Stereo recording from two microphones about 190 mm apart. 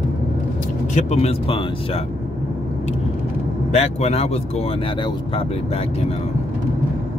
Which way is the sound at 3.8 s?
35° left (ahead or behind).